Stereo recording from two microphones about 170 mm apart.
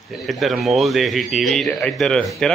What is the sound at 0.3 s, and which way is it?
Speech, centre (ahead or behind).